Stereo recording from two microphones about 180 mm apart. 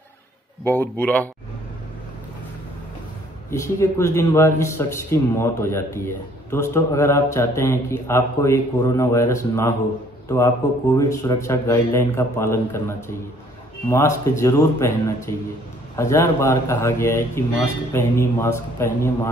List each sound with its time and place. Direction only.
0.7 s a man's voice: 10° left (ahead or behind)
3.4 s a man's voice: 15° left (ahead or behind)